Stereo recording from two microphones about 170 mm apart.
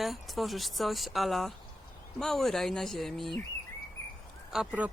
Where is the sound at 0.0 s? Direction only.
Centre (ahead or behind).